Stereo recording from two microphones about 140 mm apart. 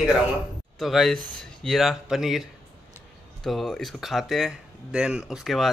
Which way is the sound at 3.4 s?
5° left (ahead or behind).